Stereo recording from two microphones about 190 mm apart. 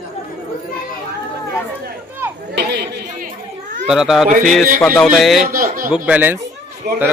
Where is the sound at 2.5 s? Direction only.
60° right (ahead or behind).